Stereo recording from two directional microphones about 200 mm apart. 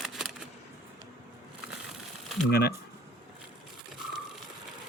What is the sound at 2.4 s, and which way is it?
Speech, 55° left (ahead or behind).